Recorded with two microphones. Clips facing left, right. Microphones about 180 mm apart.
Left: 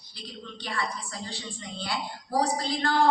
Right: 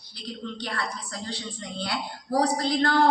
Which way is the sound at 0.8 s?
65° right (ahead or behind).